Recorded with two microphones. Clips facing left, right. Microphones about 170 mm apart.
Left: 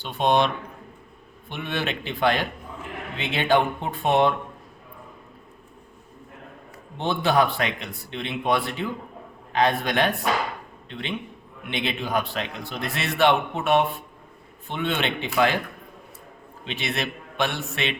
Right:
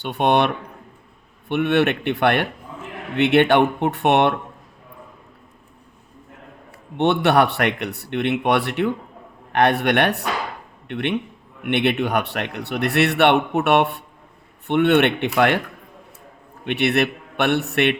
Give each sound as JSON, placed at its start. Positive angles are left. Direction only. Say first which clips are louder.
{"t": 0.0, "sound": "a man's voice", "louder": "right 3 dB", "side_deg": -65}
{"t": 6.9, "sound": "a man's voice", "louder": "right 5 dB", "side_deg": -70}
{"t": 16.6, "sound": "a man's voice", "louder": "right 10 dB", "side_deg": -65}